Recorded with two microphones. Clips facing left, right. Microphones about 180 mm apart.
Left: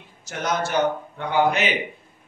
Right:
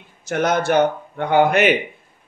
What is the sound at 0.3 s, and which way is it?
Speech, 55° right (ahead or behind).